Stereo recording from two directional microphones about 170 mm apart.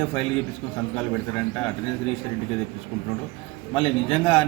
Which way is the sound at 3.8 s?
30° left (ahead or behind).